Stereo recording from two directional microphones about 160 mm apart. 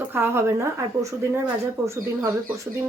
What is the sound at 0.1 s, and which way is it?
Speech, 15° right (ahead or behind).